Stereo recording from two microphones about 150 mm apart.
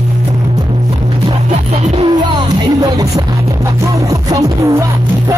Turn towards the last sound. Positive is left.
turn(degrees=-20)  # may be behind; listen again after turning